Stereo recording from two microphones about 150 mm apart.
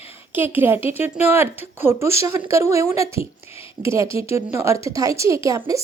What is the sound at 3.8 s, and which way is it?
A woman's voice, 20° right (ahead or behind).